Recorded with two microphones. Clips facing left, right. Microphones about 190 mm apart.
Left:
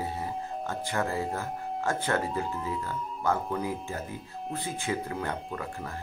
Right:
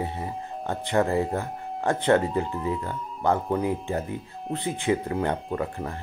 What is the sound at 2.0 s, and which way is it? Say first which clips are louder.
Speech: right 7 dB; 20° right (ahead or behind).